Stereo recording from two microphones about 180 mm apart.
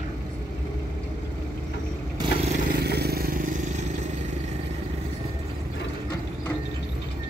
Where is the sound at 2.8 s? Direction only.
60° right (ahead or behind); by 4.1 s 40° right (ahead or behind).